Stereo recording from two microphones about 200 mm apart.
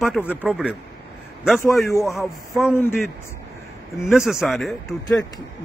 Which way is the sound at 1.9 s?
15° left (ahead or behind).